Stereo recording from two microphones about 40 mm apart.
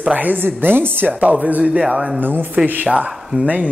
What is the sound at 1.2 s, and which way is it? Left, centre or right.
Speech, right.